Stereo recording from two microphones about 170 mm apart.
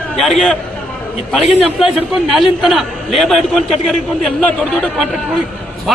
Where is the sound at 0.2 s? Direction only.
Centre (ahead or behind).